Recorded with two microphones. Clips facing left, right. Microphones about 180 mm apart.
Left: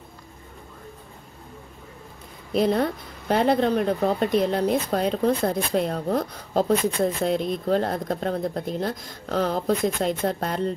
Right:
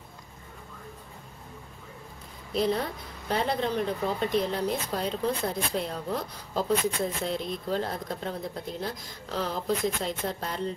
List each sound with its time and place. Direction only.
2.5 s speech: 55° left (ahead or behind)